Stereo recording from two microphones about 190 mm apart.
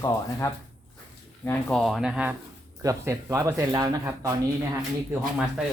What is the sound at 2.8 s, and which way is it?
Speech, 15° right (ahead or behind).